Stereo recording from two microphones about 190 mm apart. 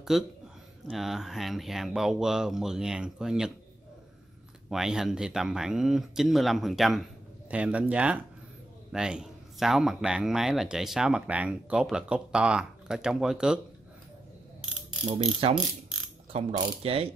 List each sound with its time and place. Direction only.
0.1 s speech: centre (ahead or behind)
4.6 s speech: 5° right (ahead or behind)
15.4 s mechanisms: 25° right (ahead or behind)